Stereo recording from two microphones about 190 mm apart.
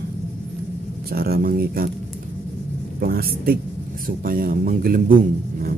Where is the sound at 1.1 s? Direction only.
50° right (ahead or behind).